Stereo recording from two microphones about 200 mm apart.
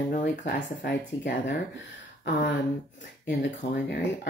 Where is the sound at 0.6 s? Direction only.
60° left (ahead or behind).